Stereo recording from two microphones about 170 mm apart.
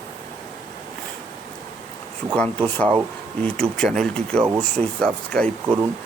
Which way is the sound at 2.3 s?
10° left (ahead or behind).